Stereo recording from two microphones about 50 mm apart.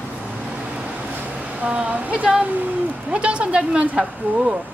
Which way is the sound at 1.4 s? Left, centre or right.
Right.